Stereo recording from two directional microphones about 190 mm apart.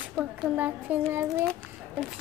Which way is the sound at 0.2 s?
10° right (ahead or behind).